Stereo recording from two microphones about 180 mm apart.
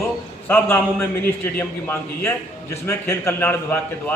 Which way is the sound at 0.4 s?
10° left (ahead or behind).